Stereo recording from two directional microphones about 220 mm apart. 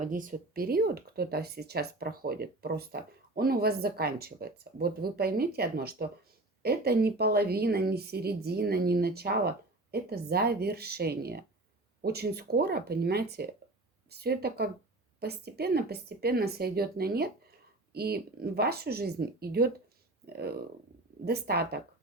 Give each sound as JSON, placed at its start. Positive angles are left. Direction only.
{"t": 0.0, "sound": "speech", "side_deg": -35}